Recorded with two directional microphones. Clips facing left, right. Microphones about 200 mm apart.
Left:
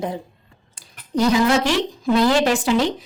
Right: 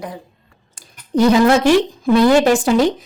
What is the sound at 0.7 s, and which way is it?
A woman's voice, 55° right (ahead or behind).